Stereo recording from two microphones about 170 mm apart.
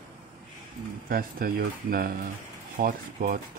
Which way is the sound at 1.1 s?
60° right (ahead or behind).